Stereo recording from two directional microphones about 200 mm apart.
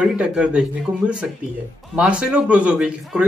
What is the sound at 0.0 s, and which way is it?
A man's voice, 5° right (ahead or behind).